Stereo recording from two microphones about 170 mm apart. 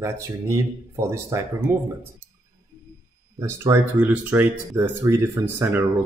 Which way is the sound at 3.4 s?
15° right (ahead or behind).